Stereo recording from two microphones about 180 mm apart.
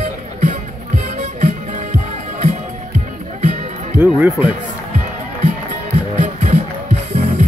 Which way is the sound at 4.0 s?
10° right (ahead or behind).